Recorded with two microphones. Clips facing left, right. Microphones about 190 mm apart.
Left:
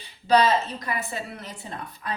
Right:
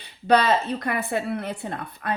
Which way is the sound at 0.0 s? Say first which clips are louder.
Even; 60° right (ahead or behind).